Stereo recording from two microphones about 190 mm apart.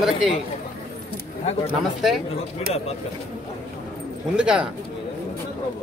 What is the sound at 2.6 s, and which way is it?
Speech, 30° left (ahead or behind).